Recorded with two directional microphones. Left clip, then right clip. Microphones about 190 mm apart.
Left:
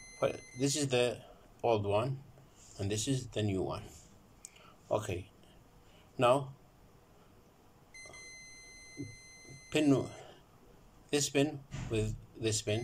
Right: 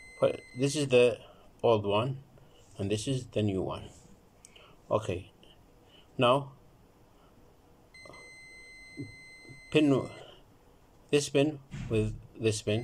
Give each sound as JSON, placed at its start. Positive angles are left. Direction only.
{"t": 0.2, "sound": "speech", "side_deg": -15}
{"t": 4.4, "sound": "a sound", "side_deg": -15}
{"t": 6.1, "sound": "a man's voice", "side_deg": -15}
{"t": 9.7, "sound": "speech", "side_deg": -15}